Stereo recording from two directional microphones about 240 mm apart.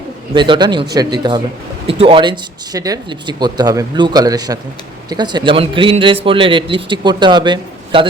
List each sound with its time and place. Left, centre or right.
0.3 s a man's voice: centre